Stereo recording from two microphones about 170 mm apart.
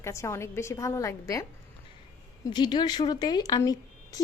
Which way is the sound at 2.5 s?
25° left (ahead or behind).